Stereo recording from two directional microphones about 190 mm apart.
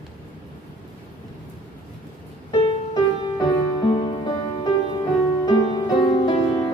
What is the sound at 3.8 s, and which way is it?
Music, 25° left (ahead or behind).